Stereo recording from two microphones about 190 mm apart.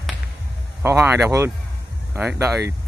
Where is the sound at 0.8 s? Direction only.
15° right (ahead or behind).